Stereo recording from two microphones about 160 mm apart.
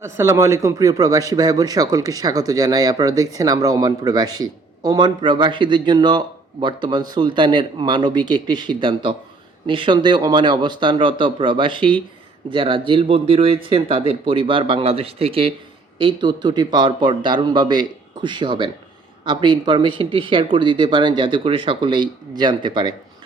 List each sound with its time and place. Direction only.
0.0 s a man's voice: 15° right (ahead or behind)